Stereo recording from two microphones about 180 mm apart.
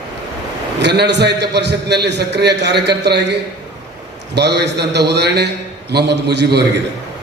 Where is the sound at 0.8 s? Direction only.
70° right (ahead or behind).